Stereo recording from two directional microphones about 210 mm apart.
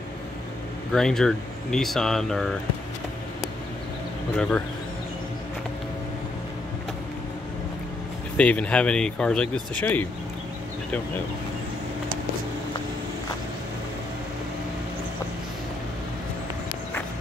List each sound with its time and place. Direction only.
0.9 s speech: 5° left (ahead or behind)
4.4 s speech: 5° left (ahead or behind)
8.4 s speech: 5° left (ahead or behind)